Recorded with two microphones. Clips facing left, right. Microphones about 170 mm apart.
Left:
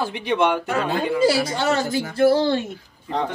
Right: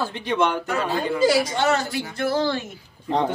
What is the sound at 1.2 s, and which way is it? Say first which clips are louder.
A woman's voice: right 1 dB; 30° left (ahead or behind).